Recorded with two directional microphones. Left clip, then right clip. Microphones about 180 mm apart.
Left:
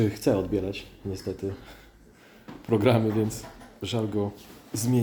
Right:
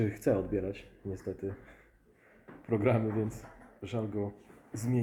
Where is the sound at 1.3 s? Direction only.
5° left (ahead or behind).